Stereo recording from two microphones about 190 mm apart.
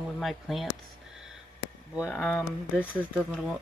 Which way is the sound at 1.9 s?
Centre (ahead or behind).